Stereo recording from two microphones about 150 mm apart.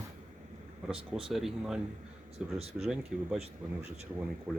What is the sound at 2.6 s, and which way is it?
Speech, 40° right (ahead or behind).